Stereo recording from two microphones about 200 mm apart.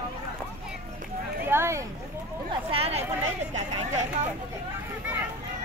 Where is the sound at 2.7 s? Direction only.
30° right (ahead or behind).